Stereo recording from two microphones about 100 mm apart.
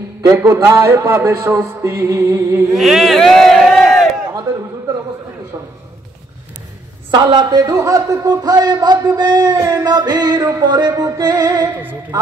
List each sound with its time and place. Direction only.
0.2 s a man's voice: 30° right (ahead or behind)
2.7 s a man's voice: centre (ahead or behind)
7.1 s speech: 50° right (ahead or behind)